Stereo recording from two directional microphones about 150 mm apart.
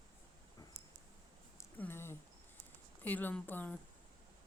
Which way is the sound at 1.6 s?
15° left (ahead or behind).